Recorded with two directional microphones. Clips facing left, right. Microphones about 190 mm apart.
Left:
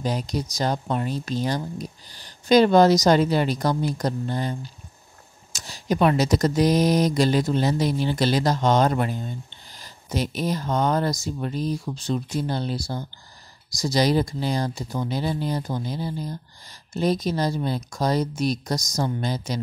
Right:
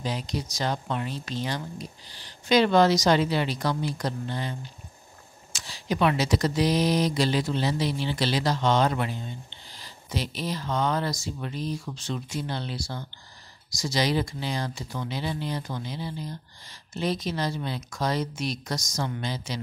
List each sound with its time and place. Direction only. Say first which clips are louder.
0.0 s speech: left 4 dB; 45° left (ahead or behind)